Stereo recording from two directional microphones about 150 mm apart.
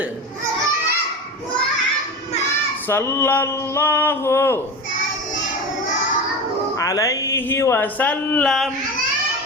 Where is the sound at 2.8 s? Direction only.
15° left (ahead or behind).